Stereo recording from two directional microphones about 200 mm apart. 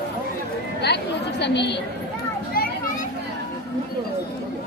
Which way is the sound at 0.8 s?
55° left (ahead or behind).